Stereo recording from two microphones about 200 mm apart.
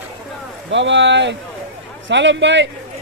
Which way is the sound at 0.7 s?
65° right (ahead or behind).